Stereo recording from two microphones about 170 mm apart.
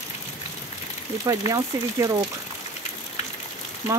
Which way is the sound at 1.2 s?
20° right (ahead or behind).